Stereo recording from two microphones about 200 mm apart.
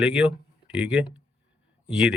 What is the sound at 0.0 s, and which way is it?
Speech, 5° right (ahead or behind).